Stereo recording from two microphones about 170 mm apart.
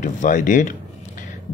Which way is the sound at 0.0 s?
50° left (ahead or behind).